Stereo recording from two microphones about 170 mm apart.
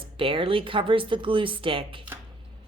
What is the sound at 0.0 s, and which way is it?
Speech, 30° right (ahead or behind).